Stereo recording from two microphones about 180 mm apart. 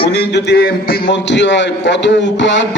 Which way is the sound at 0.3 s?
75° left (ahead or behind).